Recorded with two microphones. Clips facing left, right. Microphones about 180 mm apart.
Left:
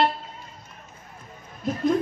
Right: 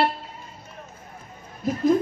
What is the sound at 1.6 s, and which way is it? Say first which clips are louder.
Speech: right 2 dB; centre (ahead or behind).